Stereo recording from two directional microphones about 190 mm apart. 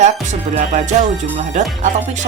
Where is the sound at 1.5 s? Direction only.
40° right (ahead or behind).